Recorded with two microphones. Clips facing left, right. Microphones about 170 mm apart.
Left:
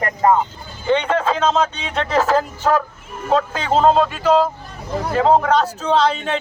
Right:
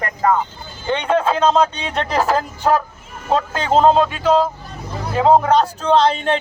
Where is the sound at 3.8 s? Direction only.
5° left (ahead or behind).